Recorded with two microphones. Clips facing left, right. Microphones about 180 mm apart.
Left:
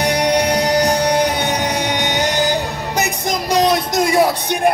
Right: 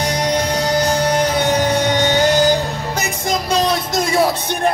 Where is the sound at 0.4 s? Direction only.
15° left (ahead or behind).